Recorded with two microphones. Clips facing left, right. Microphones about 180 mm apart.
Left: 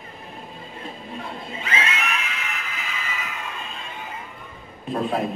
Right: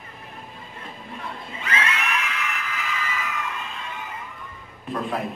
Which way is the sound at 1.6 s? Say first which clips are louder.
Right 1 dB; 25° left (ahead or behind).